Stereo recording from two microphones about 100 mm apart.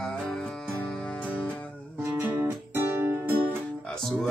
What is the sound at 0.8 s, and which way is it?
Music, 15° left (ahead or behind).